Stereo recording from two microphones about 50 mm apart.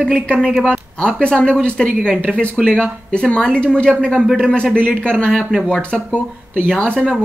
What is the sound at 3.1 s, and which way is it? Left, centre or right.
Speech, left.